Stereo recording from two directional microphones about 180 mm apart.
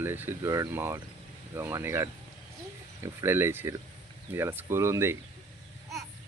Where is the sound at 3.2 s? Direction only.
15° right (ahead or behind).